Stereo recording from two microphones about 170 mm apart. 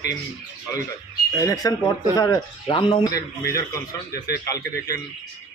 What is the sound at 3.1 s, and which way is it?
Speech, 65° left (ahead or behind).